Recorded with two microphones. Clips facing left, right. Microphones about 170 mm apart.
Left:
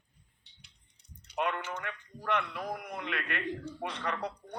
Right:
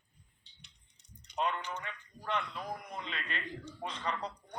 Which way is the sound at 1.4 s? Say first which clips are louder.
Left 2 dB; 65° left (ahead or behind).